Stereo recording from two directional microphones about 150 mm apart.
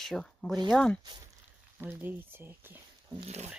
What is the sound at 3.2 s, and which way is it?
Speech, 45° right (ahead or behind).